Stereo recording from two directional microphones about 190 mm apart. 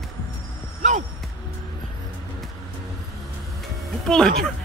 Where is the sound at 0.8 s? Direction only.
40° right (ahead or behind).